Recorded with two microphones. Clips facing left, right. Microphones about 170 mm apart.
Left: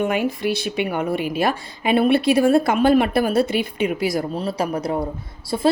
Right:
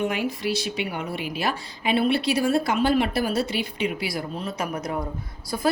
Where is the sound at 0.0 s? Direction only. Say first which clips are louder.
Left 5 dB; 50° left (ahead or behind).